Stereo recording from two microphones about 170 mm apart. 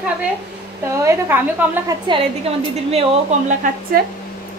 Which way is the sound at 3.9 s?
60° right (ahead or behind).